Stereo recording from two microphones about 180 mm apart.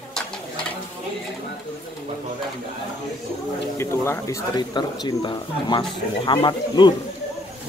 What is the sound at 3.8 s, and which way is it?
Speech, 15° left (ahead or behind).